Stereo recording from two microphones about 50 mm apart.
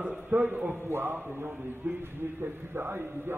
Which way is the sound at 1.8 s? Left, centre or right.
Right.